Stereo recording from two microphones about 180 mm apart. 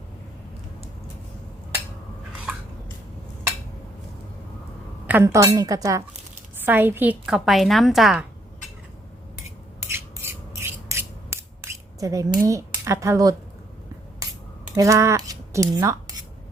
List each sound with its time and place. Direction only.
5.0 s a woman's voice: 10° right (ahead or behind)
9.9 s rub: 15° right (ahead or behind)
12.5 s speech: 15° right (ahead or behind)
14.8 s speech: 15° right (ahead or behind)